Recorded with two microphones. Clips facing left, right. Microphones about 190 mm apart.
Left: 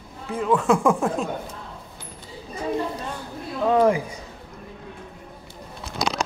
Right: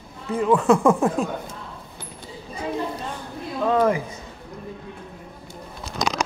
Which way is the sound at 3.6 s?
15° left (ahead or behind).